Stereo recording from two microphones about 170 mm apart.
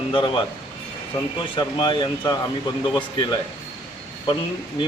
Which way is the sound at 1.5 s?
30° left (ahead or behind).